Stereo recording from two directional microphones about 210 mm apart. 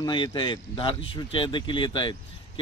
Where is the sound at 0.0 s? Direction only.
20° left (ahead or behind).